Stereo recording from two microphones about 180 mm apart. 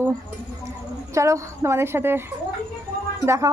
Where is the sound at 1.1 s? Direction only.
15° right (ahead or behind).